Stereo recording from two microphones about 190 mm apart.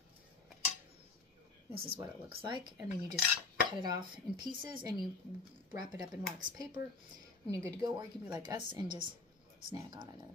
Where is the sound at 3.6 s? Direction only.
20° right (ahead or behind).